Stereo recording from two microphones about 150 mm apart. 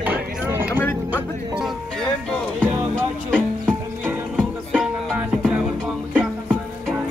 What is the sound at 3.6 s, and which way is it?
Music, 10° right (ahead or behind).